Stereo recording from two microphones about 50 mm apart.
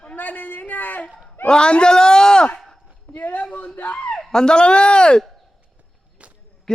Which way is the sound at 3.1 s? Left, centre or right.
Left.